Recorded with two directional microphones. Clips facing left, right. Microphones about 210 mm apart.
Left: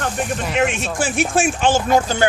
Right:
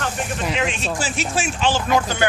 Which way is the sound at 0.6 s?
50° left (ahead or behind).